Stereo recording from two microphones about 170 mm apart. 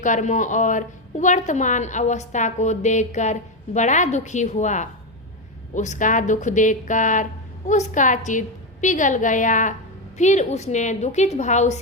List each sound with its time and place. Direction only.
0.0 s a woman's voice: 45° left (ahead or behind)